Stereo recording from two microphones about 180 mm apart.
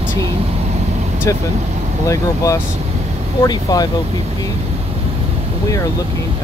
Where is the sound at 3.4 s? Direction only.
20° left (ahead or behind).